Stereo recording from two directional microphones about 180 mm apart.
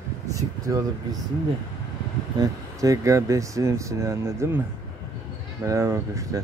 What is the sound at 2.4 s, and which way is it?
Speech, 20° right (ahead or behind).